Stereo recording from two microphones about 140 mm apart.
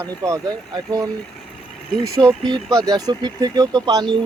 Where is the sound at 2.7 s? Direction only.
25° right (ahead or behind).